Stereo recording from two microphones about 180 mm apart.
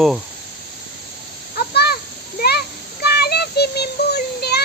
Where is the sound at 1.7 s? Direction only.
65° left (ahead or behind).